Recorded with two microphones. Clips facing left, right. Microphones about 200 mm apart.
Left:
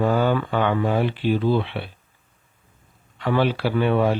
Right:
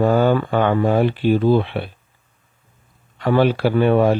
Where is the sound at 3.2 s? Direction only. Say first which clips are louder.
Right 5 dB; 45° right (ahead or behind).